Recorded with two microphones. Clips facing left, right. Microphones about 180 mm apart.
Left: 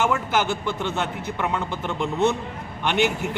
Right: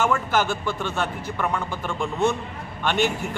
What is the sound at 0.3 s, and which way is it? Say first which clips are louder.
Speech: even; 20° left (ahead or behind).